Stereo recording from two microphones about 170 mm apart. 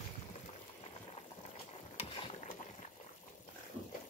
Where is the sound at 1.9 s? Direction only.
40° left (ahead or behind).